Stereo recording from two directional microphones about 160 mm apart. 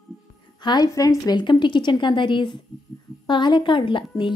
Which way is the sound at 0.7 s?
25° left (ahead or behind).